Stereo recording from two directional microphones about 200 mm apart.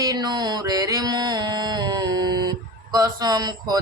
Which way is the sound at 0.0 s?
20° right (ahead or behind).